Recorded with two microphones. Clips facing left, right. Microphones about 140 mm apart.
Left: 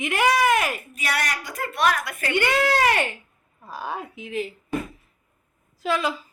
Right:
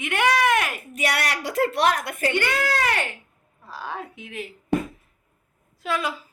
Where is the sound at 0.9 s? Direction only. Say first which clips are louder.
Right 5 dB; 75° right (ahead or behind).